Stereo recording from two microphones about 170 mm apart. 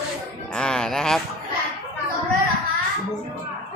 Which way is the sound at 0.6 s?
5° left (ahead or behind).